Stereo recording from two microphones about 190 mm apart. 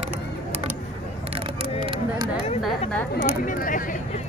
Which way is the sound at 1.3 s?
30° right (ahead or behind).